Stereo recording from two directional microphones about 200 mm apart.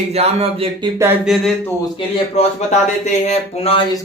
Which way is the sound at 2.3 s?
35° left (ahead or behind).